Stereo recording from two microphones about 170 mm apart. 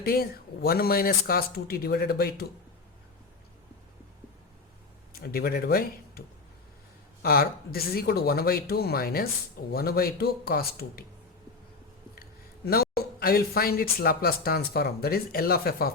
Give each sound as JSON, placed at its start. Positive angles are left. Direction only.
{"t": 0.0, "sound": "speech", "side_deg": 60}
{"t": 5.1, "sound": "speech", "side_deg": 65}
{"t": 12.6, "sound": "speech", "side_deg": 65}